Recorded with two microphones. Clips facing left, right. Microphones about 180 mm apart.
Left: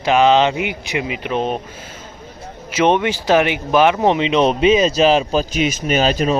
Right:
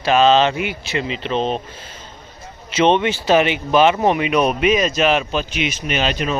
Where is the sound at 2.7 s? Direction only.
10° left (ahead or behind).